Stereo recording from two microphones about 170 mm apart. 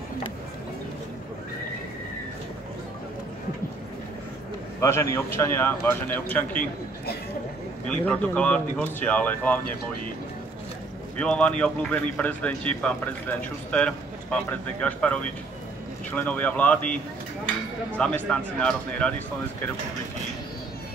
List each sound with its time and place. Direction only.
4.7 s a man's voice: 15° left (ahead or behind)
6.5 s a man's voice: 50° left (ahead or behind)
7.9 s a man's voice: 10° left (ahead or behind)
11.1 s a man's voice: 5° left (ahead or behind)
16.2 s a man's voice: 10° left (ahead or behind)